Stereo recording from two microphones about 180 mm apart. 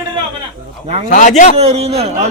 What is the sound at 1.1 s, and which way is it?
Speech, 40° left (ahead or behind).